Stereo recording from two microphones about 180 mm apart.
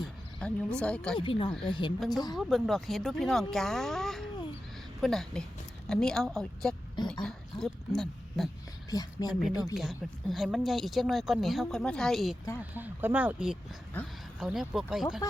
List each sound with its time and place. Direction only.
0.0 s speech: 5° left (ahead or behind)
1.2 s speech: 30° left (ahead or behind)
2.3 s a woman's voice: centre (ahead or behind)
7.1 s a sound: 5° left (ahead or behind)
8.9 s speech: 20° left (ahead or behind)
9.3 s a woman's voice: centre (ahead or behind)
12.7 s speech: 10° right (ahead or behind)
14.0 s speech: 10° left (ahead or behind)
14.3 s a woman's voice: 5° right (ahead or behind)